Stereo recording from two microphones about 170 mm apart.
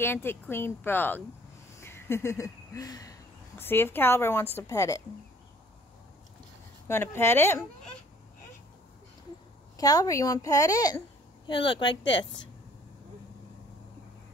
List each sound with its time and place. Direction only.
0.0 s speech: 15° left (ahead or behind)
1.8 s a sound: 15° left (ahead or behind)
4.6 s a woman's voice: 20° left (ahead or behind)
6.9 s speech: 15° left (ahead or behind)
9.8 s a woman's voice: 20° left (ahead or behind)
12.1 s a woman's voice: 90° left